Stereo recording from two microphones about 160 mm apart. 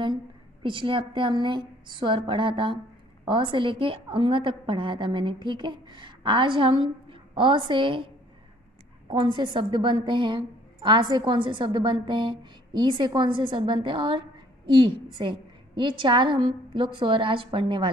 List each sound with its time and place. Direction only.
0.0 s a woman's voice: 30° right (ahead or behind)
9.1 s a woman's voice: 30° right (ahead or behind)